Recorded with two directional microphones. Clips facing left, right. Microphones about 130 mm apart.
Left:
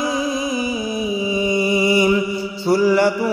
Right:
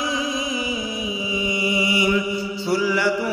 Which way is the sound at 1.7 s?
45° left (ahead or behind).